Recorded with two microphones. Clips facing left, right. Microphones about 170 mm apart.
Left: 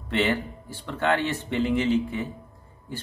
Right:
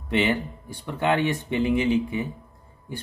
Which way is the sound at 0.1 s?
15° right (ahead or behind).